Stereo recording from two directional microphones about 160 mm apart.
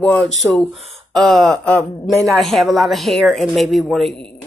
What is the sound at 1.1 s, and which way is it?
Speech, centre (ahead or behind).